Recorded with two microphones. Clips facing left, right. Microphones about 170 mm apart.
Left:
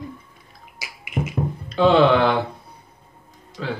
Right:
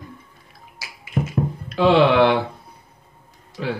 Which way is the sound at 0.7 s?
15° left (ahead or behind).